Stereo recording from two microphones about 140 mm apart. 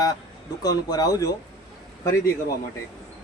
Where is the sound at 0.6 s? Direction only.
25° left (ahead or behind).